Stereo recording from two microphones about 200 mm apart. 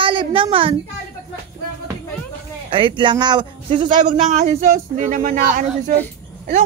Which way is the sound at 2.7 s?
25° right (ahead or behind).